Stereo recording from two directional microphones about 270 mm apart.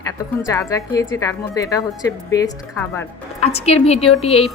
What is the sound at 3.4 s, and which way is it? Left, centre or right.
A woman's voice, left.